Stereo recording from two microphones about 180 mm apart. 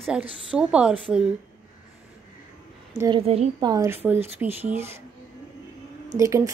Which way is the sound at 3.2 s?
35° right (ahead or behind).